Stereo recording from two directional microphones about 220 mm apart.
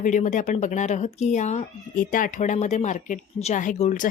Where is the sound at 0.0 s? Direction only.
35° left (ahead or behind).